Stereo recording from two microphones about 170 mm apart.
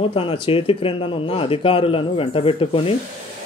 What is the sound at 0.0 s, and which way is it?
Speech, 35° left (ahead or behind).